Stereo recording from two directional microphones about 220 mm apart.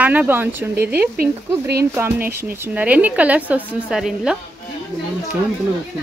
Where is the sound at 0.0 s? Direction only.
5° right (ahead or behind).